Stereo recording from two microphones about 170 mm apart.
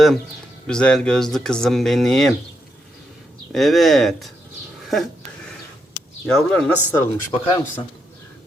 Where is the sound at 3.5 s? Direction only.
Centre (ahead or behind).